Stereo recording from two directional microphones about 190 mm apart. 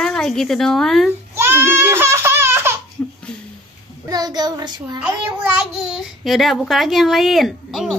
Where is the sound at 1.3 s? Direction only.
15° right (ahead or behind).